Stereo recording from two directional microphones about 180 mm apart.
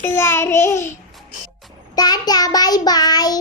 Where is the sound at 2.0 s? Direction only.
20° left (ahead or behind).